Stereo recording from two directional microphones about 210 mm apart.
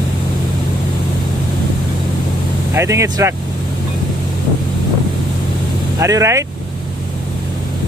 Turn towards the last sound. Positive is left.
turn(degrees=-15)  # may be behind; listen again after turning